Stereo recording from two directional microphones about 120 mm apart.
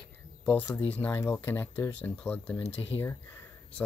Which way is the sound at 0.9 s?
15° left (ahead or behind).